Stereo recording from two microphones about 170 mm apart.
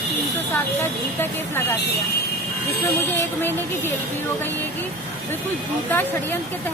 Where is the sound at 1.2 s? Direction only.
10° left (ahead or behind).